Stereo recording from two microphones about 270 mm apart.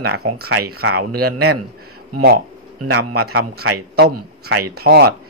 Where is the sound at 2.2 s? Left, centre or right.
Right.